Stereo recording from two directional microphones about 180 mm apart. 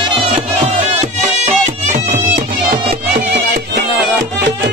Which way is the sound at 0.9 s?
40° right (ahead or behind).